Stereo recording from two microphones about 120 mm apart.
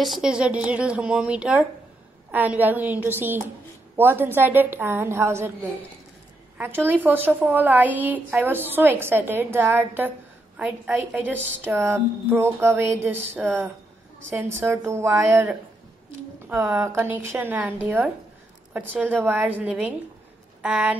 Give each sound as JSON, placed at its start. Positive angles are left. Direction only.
{"t": 0.0, "sound": "a woman's voice", "side_deg": -5}
{"t": 14.9, "sound": "a woman's voice", "side_deg": -25}
{"t": 16.4, "sound": "a woman's voice", "side_deg": -15}